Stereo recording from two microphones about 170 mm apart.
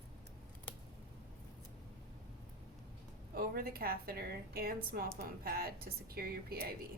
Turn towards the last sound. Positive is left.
turn(degrees=-65)  # may be behind; listen again after turning